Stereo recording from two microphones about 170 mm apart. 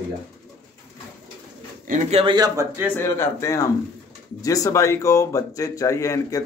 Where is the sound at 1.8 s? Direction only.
45° right (ahead or behind).